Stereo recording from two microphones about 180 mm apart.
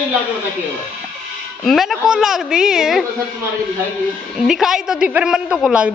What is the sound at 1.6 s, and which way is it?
A woman's voice, centre (ahead or behind).